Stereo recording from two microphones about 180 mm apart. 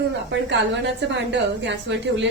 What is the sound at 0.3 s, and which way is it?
A woman's voice, 75° right (ahead or behind).